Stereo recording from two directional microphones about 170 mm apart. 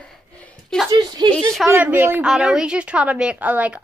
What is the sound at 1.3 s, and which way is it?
Speech, 5° left (ahead or behind).